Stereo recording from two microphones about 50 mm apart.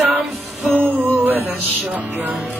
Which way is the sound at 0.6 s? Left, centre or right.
Right.